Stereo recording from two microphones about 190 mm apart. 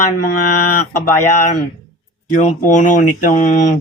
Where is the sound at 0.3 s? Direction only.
45° left (ahead or behind).